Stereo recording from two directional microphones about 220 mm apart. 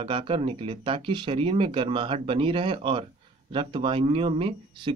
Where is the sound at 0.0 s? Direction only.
25° right (ahead or behind).